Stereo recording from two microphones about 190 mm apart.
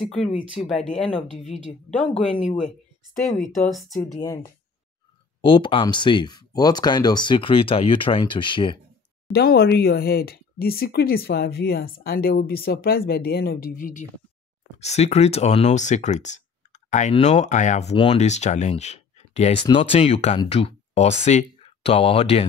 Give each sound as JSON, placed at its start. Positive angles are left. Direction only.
{"t": 0.0, "sound": "speech", "side_deg": 0}
{"t": 3.4, "sound": "speech", "side_deg": 40}
{"t": 4.0, "sound": "speech", "side_deg": 15}
{"t": 5.4, "sound": "speech", "side_deg": 25}
{"t": 9.3, "sound": "speech", "side_deg": 55}
{"t": 14.8, "sound": "speech", "side_deg": 35}